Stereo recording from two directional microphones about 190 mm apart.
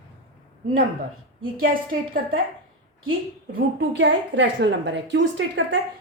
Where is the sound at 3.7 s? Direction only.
65° right (ahead or behind).